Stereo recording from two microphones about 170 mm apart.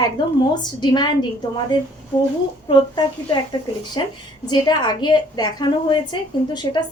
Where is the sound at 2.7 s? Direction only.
25° left (ahead or behind).